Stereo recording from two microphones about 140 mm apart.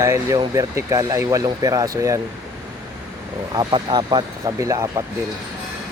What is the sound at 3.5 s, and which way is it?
Speech, 30° right (ahead or behind).